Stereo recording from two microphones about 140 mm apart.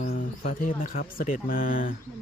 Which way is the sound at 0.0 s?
65° left (ahead or behind).